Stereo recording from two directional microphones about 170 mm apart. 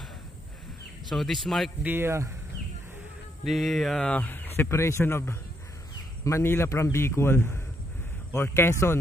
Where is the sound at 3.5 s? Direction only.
Centre (ahead or behind).